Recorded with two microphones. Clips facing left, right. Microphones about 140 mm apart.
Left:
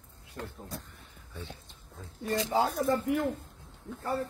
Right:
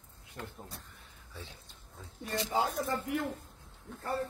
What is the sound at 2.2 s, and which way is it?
Speech, 25° left (ahead or behind).